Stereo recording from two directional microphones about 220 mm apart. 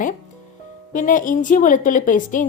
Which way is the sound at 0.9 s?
35° left (ahead or behind).